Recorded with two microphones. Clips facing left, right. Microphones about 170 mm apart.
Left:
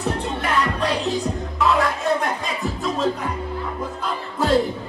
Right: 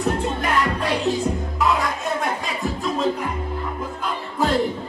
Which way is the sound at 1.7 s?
Centre (ahead or behind).